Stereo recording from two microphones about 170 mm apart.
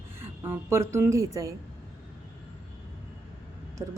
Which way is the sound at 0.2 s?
15° right (ahead or behind).